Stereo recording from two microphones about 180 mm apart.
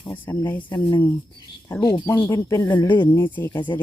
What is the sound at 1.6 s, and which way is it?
Speech, 15° left (ahead or behind).